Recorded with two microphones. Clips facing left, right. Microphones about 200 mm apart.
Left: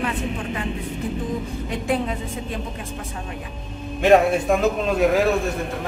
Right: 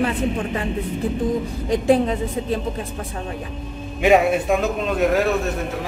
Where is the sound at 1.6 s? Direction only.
35° right (ahead or behind).